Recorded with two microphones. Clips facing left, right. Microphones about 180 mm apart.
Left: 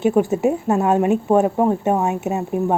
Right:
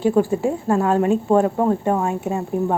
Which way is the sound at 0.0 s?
20° left (ahead or behind).